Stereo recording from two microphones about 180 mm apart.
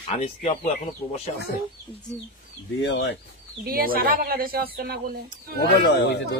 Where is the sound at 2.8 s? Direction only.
75° left (ahead or behind).